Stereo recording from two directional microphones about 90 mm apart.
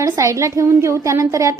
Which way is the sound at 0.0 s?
35° right (ahead or behind).